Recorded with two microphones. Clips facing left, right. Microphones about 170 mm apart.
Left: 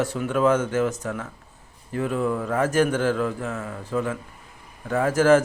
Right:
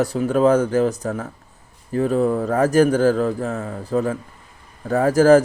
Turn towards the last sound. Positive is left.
turn(degrees=-35)  # may be behind; listen again after turning